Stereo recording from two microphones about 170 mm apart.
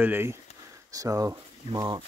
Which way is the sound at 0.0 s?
10° right (ahead or behind).